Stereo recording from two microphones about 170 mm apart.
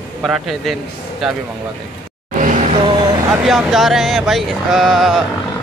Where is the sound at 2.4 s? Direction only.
45° right (ahead or behind).